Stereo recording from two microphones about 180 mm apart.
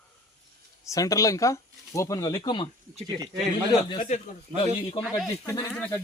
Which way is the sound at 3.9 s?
35° left (ahead or behind).